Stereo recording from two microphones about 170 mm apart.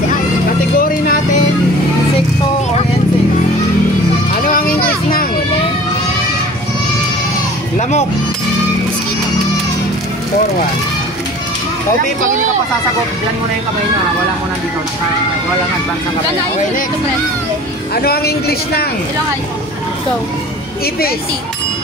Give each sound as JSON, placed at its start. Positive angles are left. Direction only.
{"t": 0.7, "sound": "music", "side_deg": 55}
{"t": 17.9, "sound": "speech", "side_deg": 65}